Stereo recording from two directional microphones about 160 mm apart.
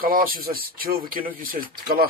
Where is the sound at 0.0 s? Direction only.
65° right (ahead or behind).